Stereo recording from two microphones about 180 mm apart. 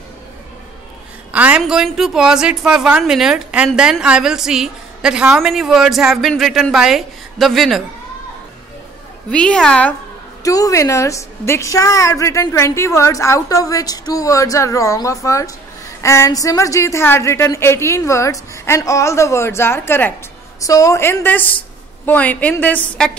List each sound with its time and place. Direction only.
1.3 s a woman's voice: 10° right (ahead or behind)
9.3 s a woman's voice: 5° left (ahead or behind)
10.4 s a woman's voice: 20° left (ahead or behind)